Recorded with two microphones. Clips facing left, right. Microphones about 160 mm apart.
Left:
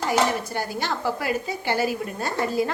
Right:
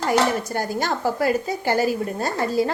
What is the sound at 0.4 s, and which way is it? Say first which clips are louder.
A woman's voice: right 3 dB; 45° right (ahead or behind).